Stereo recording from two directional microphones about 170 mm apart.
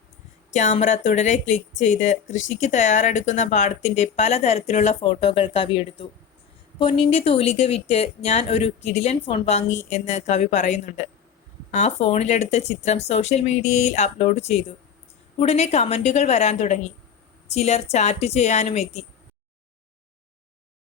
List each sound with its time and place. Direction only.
0.5 s speech: 45° left (ahead or behind)